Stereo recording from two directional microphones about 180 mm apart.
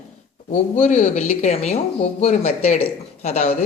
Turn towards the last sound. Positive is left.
turn(degrees=35)  # may be behind; listen again after turning